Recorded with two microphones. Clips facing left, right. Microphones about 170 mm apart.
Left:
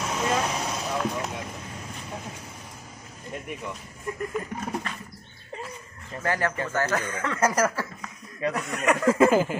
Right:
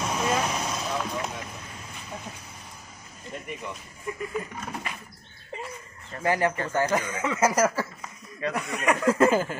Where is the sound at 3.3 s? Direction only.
5° left (ahead or behind).